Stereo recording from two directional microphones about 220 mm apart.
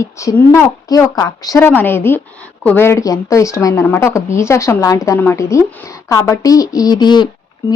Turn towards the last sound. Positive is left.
turn(degrees=20)  # may be behind; listen again after turning